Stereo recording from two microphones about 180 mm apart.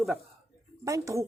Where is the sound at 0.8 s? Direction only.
20° right (ahead or behind).